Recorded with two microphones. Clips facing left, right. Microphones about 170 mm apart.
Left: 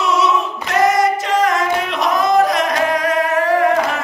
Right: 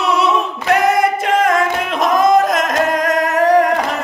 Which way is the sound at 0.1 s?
60° right (ahead or behind).